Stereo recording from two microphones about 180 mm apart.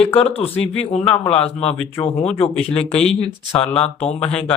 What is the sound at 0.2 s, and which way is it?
Speech, 35° left (ahead or behind).